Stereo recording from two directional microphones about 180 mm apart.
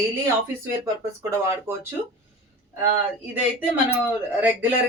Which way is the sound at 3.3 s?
10° right (ahead or behind).